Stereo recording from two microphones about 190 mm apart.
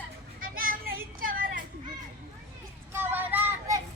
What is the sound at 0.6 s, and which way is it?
Child singing, 50° right (ahead or behind).